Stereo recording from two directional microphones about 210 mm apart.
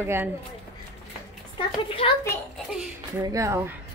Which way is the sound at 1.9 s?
25° left (ahead or behind).